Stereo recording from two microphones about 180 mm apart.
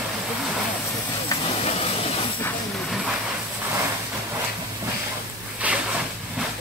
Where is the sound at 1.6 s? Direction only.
35° left (ahead or behind).